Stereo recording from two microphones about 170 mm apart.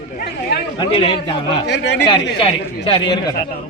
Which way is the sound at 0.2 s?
65° left (ahead or behind).